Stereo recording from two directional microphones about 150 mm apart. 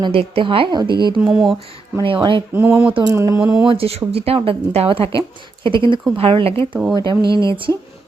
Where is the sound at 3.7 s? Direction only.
40° right (ahead or behind).